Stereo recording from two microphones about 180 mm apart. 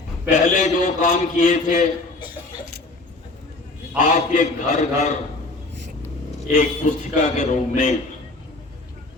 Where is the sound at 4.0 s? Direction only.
45° left (ahead or behind).